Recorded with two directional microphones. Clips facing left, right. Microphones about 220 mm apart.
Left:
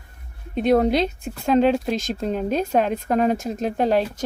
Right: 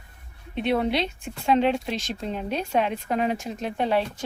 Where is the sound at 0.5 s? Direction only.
40° left (ahead or behind).